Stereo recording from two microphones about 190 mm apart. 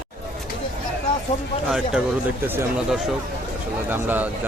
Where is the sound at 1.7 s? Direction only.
5° right (ahead or behind).